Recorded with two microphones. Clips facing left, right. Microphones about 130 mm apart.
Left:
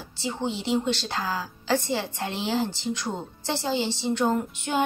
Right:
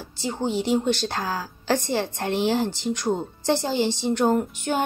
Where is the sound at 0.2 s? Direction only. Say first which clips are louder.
Right 4 dB; 45° right (ahead or behind).